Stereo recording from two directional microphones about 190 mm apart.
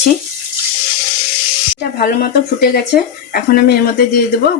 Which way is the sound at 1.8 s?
55° left (ahead or behind).